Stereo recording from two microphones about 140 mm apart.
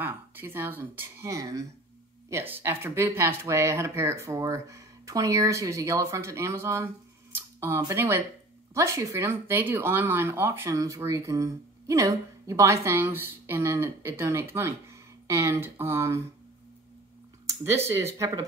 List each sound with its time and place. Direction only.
0.0 s speech: 15° right (ahead or behind)
17.5 s speech: 20° right (ahead or behind)